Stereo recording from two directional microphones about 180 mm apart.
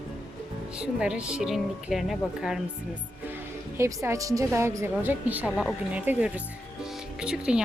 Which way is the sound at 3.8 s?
15° right (ahead or behind).